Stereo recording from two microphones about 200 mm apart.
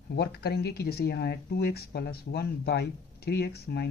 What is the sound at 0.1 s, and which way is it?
Speech, 50° left (ahead or behind).